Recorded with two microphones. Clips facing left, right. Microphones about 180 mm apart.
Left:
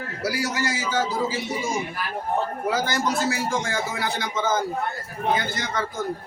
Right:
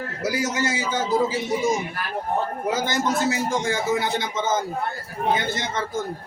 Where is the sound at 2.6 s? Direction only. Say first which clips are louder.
Right 1 dB; 20° right (ahead or behind).